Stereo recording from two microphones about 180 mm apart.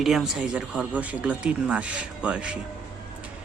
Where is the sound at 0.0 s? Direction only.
Centre (ahead or behind).